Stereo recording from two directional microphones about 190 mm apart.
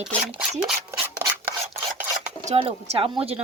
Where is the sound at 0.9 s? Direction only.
10° right (ahead or behind).